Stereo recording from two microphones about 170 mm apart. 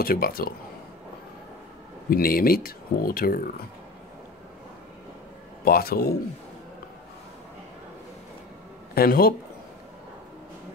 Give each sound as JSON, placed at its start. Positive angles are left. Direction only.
{"t": 0.0, "sound": "speech", "side_deg": 60}
{"t": 2.0, "sound": "speech", "side_deg": 60}
{"t": 5.7, "sound": "speech", "side_deg": 60}
{"t": 8.9, "sound": "speech", "side_deg": 60}